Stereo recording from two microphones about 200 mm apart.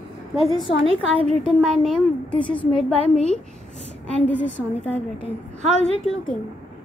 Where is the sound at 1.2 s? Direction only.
30° right (ahead or behind).